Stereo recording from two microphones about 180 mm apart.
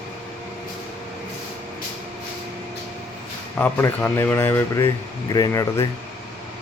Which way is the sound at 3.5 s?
10° left (ahead or behind).